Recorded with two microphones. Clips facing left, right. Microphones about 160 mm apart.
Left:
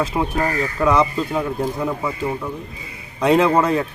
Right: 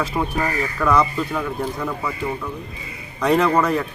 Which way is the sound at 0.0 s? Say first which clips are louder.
Left 2 dB; 20° left (ahead or behind).